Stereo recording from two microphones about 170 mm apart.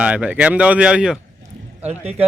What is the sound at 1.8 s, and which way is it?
Speech, 40° right (ahead or behind).